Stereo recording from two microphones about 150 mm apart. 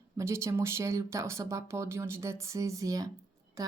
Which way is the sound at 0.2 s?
20° right (ahead or behind).